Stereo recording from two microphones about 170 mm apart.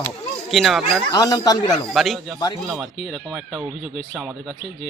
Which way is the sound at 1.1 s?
20° left (ahead or behind).